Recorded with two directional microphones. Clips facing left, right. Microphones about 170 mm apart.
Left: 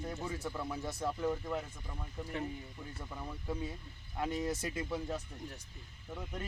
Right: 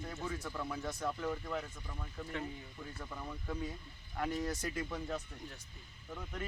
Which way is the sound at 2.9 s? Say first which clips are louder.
Even; 10° left (ahead or behind).